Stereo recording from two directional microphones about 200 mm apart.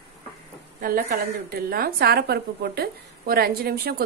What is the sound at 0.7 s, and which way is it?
A woman's voice, 45° right (ahead or behind).